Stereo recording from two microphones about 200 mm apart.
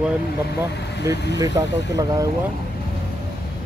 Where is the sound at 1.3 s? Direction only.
15° right (ahead or behind).